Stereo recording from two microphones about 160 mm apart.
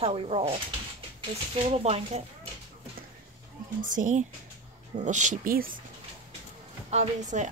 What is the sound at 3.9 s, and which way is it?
A woman's voice, 50° right (ahead or behind).